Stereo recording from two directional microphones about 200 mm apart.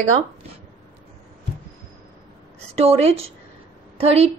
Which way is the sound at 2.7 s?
30° right (ahead or behind).